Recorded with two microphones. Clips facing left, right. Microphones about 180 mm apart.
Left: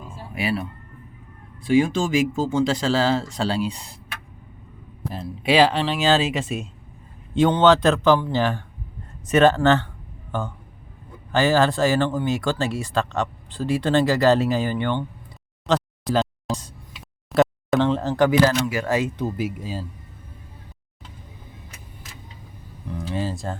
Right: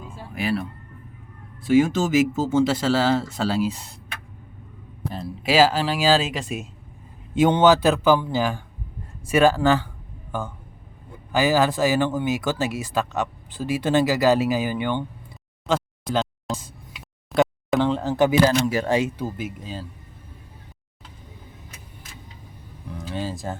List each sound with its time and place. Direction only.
0.3 s speech: 5° left (ahead or behind)
1.6 s speech: 5° right (ahead or behind)
5.1 s speech: centre (ahead or behind)
7.3 s speech: 10° right (ahead or behind)
11.3 s speech: 15° right (ahead or behind)
15.6 s a sound: centre (ahead or behind)
18.1 s speech: 15° right (ahead or behind)
18.6 s speech: 30° right (ahead or behind)
19.1 s speech: centre (ahead or behind)
22.9 s speech: centre (ahead or behind)